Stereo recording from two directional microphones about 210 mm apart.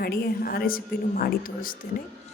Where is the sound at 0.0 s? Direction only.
45° left (ahead or behind).